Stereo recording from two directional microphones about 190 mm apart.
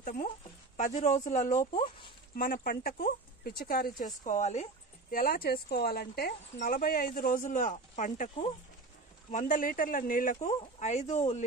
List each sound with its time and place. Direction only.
0.0 s a sound: 45° left (ahead or behind)
0.7 s speech: 40° left (ahead or behind)
5.1 s speech: 50° left (ahead or behind)
9.3 s speech: 45° left (ahead or behind)